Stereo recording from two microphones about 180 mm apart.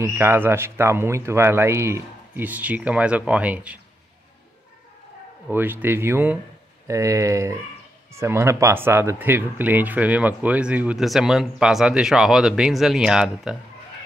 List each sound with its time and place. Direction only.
0.0 s speech: 15° right (ahead or behind)
5.5 s speech: 10° right (ahead or behind)